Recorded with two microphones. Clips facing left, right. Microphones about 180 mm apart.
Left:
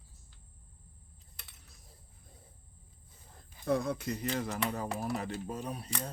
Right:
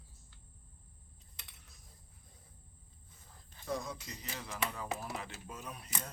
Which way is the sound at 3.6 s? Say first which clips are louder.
Left 9 dB; 60° left (ahead or behind).